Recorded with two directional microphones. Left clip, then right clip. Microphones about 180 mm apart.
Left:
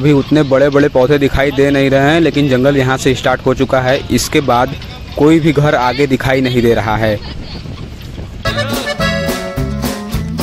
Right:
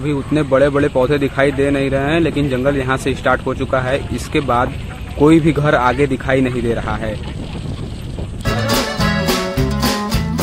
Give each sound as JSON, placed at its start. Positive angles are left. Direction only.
{"t": 0.0, "sound": "speech", "side_deg": 40}
{"t": 8.6, "sound": "music", "side_deg": 0}